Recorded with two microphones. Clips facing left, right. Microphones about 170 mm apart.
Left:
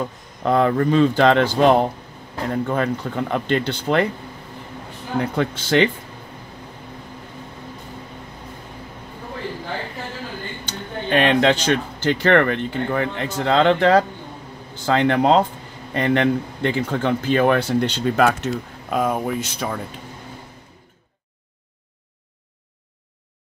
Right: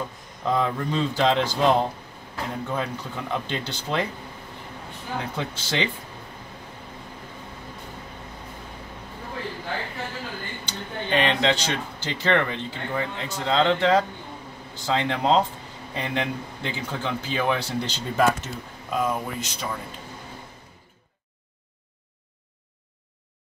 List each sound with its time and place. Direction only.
0.5 s speech: 60° left (ahead or behind)
5.3 s speech: 55° left (ahead or behind)
10.6 s speech: 60° left (ahead or behind)